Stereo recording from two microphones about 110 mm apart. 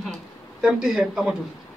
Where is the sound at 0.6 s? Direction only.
5° right (ahead or behind).